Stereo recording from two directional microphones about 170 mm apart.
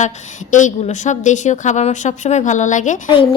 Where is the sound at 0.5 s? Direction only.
45° left (ahead or behind).